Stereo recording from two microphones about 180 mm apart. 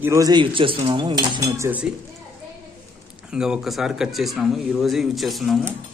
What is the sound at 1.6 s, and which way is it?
Cutlery, 10° right (ahead or behind).